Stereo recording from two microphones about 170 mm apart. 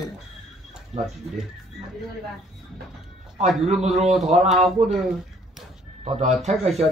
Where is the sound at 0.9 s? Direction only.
40° right (ahead or behind).